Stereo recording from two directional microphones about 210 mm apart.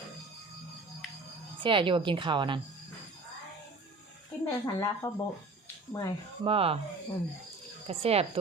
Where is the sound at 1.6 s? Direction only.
25° right (ahead or behind).